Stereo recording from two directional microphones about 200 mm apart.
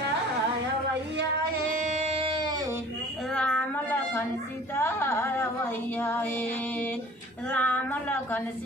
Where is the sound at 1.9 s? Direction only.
30° right (ahead or behind).